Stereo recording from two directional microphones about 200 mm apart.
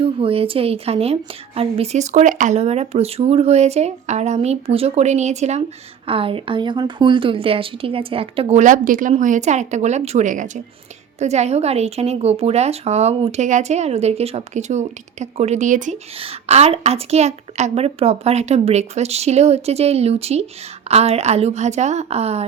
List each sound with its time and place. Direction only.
0.0 s a woman's voice: 30° right (ahead or behind)